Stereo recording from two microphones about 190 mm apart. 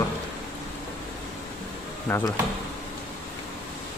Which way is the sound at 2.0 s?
10° left (ahead or behind).